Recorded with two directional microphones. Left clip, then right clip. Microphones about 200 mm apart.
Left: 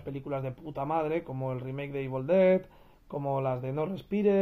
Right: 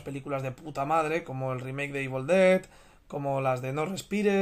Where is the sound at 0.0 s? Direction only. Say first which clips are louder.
Right 2 dB; 10° right (ahead or behind).